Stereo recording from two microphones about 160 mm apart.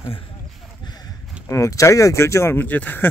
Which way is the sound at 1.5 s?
20° left (ahead or behind).